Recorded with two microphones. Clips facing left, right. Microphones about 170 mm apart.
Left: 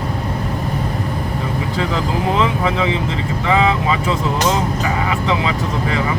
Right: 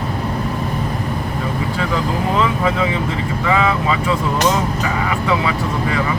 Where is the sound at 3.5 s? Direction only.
30° left (ahead or behind).